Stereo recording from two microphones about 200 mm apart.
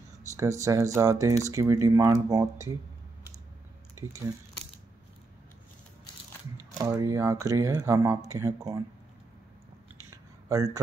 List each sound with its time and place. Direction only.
0.4 s speech: 15° right (ahead or behind)
6.5 s speech: 15° right (ahead or behind)
10.5 s speech: 15° right (ahead or behind)